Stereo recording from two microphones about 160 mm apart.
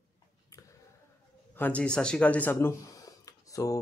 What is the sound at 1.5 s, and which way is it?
A man's voice, 10° left (ahead or behind).